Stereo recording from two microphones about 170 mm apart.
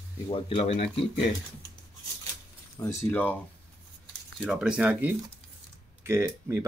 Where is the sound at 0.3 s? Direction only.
40° left (ahead or behind).